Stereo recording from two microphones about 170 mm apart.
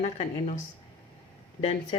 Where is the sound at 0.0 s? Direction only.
45° left (ahead or behind).